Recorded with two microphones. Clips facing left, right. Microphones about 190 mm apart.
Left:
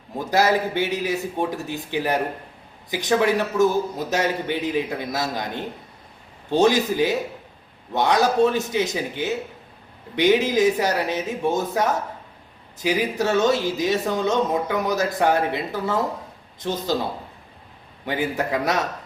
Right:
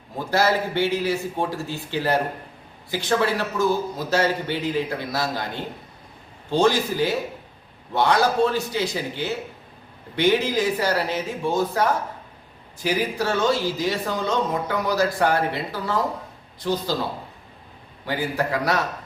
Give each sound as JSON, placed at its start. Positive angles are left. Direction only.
{"t": 0.3, "sound": "a man's voice", "side_deg": 15}
{"t": 18.0, "sound": "speech", "side_deg": 20}